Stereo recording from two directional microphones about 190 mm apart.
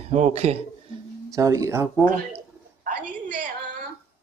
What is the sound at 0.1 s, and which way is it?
Speech, 35° right (ahead or behind).